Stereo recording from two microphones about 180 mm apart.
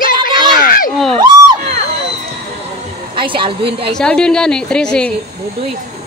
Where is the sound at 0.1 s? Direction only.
25° right (ahead or behind).